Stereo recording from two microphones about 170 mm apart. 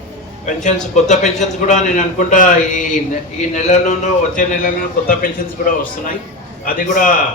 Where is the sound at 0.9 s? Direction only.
45° left (ahead or behind).